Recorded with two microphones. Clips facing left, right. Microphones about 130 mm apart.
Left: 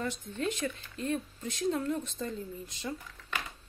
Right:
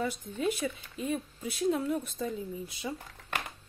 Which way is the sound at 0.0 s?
10° right (ahead or behind).